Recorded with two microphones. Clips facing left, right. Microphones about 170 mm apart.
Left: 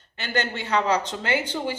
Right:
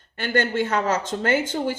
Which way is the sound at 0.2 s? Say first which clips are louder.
Right 6 dB; 50° right (ahead or behind).